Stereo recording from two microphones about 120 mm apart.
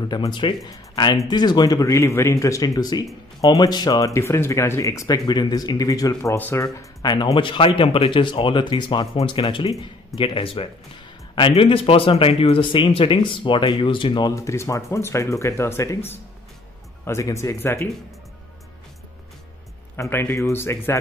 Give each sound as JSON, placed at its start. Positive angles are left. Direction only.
{"t": 0.1, "sound": "speech", "side_deg": 40}
{"t": 6.3, "sound": "speech", "side_deg": 15}
{"t": 6.6, "sound": "speech", "side_deg": 30}
{"t": 9.0, "sound": "speech", "side_deg": 50}
{"t": 14.3, "sound": "speech", "side_deg": 25}
{"t": 20.0, "sound": "speech", "side_deg": 20}